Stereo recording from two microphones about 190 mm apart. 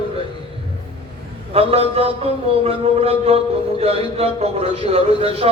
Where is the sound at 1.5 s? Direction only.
30° right (ahead or behind).